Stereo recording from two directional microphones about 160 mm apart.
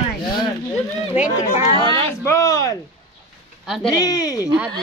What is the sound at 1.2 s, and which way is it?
Speech, 45° left (ahead or behind).